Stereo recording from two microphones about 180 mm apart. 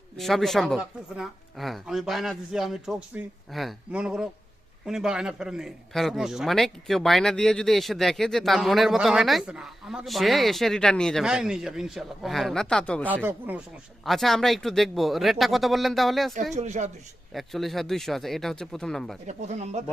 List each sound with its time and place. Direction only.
0.2 s a man's voice: centre (ahead or behind)
13.1 s speech: 10° right (ahead or behind)
14.0 s a man's voice: centre (ahead or behind)
16.6 s speech: 40° right (ahead or behind)
17.3 s a man's voice: centre (ahead or behind)
19.3 s speech: 40° right (ahead or behind)